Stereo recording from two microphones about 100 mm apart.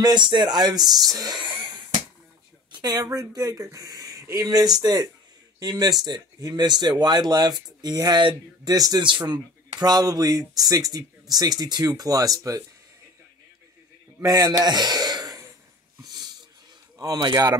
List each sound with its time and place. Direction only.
0.0 s speech: 50° right (ahead or behind)
8.7 s speech: 40° right (ahead or behind)
14.2 s a sound: 40° right (ahead or behind)
16.0 s wheeze: 40° right (ahead or behind)
17.0 s speech: 40° right (ahead or behind)